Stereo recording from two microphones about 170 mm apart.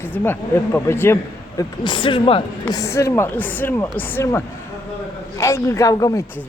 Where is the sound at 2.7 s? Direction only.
15° left (ahead or behind).